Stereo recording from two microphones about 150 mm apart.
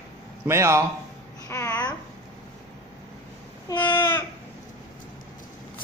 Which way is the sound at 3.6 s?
30° left (ahead or behind).